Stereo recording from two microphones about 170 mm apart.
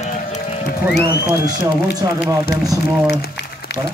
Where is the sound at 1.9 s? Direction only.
20° right (ahead or behind).